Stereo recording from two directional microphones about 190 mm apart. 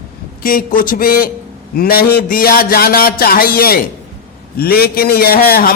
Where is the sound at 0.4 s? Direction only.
50° left (ahead or behind).